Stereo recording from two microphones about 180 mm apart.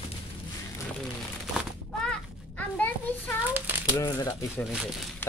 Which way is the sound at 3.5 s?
10° right (ahead or behind).